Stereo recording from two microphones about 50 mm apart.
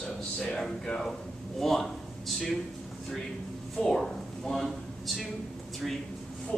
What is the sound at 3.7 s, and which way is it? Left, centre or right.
Speech, centre.